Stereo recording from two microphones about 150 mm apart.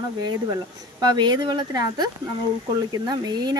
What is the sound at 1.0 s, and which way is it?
Speech, 30° right (ahead or behind).